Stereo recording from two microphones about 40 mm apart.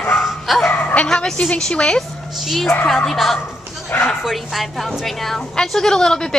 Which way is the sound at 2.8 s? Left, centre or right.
Centre.